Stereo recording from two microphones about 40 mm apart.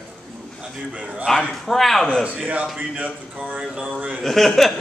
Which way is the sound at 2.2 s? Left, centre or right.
Right.